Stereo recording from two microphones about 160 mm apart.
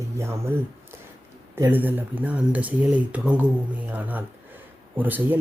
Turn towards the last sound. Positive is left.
turn(degrees=-10)  # may be behind; listen again after turning